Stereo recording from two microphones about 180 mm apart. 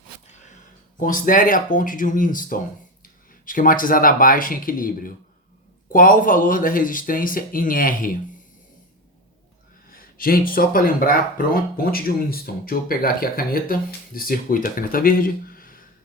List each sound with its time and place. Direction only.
0.9 s speech: 50° left (ahead or behind)
9.9 s speech: 55° left (ahead or behind)